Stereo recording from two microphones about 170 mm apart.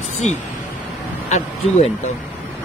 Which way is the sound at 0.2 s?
45° left (ahead or behind).